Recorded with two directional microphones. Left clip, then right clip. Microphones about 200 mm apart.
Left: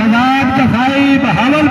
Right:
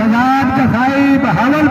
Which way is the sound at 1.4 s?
15° left (ahead or behind).